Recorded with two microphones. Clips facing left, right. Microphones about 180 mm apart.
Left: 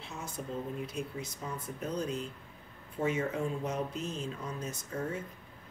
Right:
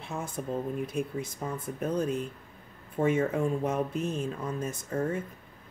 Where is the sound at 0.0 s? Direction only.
55° right (ahead or behind).